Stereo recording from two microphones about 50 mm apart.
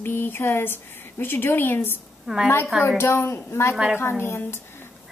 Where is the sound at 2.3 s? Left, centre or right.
Centre.